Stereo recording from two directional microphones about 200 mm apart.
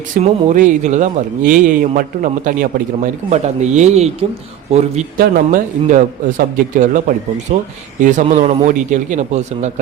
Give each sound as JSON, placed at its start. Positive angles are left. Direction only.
{"t": 0.2, "sound": "speech", "side_deg": -40}
{"t": 7.5, "sound": "speech", "side_deg": -30}